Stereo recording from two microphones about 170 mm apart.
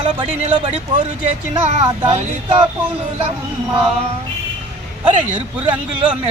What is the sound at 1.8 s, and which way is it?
Speech, 30° right (ahead or behind).